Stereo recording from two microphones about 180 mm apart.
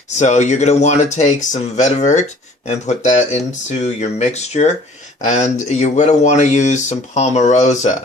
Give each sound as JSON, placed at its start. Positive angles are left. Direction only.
{"t": 0.2, "sound": "speech", "side_deg": 40}